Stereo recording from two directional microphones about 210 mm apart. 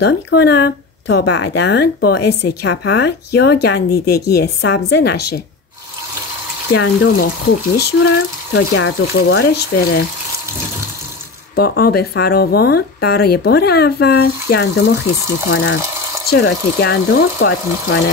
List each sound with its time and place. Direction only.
0.0 s speech: 50° left (ahead or behind)
1.2 s speech: 90° left
1.5 s speech: 50° left (ahead or behind)
6.7 s speech: 55° left (ahead or behind)
11.5 s speech: 50° left (ahead or behind)